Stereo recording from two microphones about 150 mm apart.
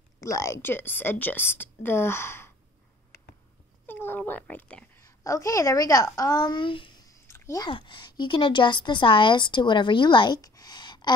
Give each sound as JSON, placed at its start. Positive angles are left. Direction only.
{"t": 0.2, "sound": "a woman's voice", "side_deg": 20}
{"t": 3.8, "sound": "a child's voice", "side_deg": 15}
{"t": 5.2, "sound": "a woman's voice", "side_deg": 20}
{"t": 7.1, "sound": "a sound", "side_deg": 20}
{"t": 7.6, "sound": "a woman's voice", "side_deg": 35}